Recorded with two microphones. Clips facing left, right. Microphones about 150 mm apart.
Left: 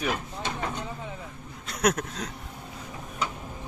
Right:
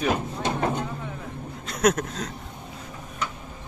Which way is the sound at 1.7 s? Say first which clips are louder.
Right 3 dB; 10° left (ahead or behind).